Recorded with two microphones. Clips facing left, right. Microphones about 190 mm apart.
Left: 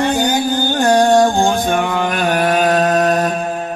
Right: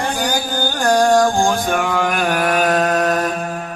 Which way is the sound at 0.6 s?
25° left (ahead or behind).